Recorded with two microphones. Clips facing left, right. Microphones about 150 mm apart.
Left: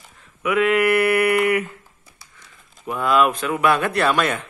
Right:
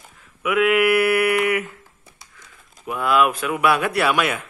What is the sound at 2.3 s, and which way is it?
Speech, 5° right (ahead or behind).